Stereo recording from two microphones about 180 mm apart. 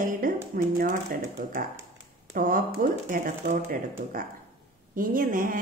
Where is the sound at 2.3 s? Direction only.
50° right (ahead or behind).